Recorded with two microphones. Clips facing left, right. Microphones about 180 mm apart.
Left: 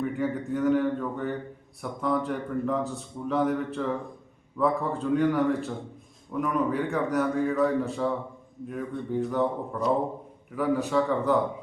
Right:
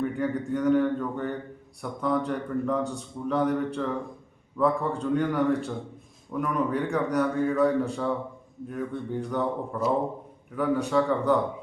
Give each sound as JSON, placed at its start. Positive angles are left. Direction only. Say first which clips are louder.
{"t": 0.0, "sound": "a man's voice", "louder": "right 1 dB", "side_deg": 0}